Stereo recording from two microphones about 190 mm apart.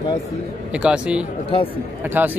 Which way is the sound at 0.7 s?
5° right (ahead or behind).